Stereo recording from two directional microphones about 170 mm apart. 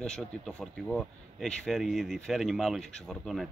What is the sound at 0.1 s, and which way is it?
Speech, 5° left (ahead or behind).